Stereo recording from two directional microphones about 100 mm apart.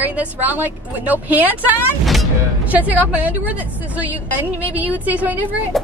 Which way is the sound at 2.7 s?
15° right (ahead or behind).